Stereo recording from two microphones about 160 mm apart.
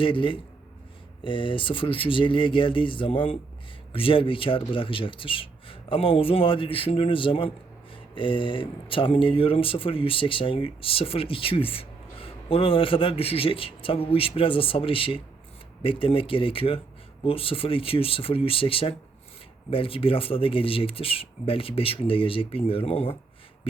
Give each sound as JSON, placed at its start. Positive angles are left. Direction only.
{"t": 0.0, "sound": "speech", "side_deg": 30}